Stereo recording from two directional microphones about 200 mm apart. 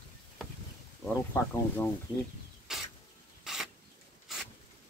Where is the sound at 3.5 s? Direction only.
5° right (ahead or behind).